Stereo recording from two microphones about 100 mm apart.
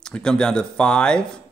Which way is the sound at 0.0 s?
10° left (ahead or behind).